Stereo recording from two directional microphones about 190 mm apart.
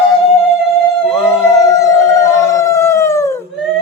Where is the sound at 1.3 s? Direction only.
15° left (ahead or behind).